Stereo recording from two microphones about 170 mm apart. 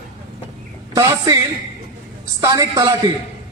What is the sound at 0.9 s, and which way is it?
Speech, 20° right (ahead or behind).